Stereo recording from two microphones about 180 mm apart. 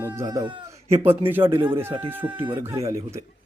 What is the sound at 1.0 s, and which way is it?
Speech, 10° right (ahead or behind).